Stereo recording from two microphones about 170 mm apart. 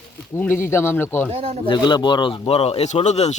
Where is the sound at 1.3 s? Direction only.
35° right (ahead or behind).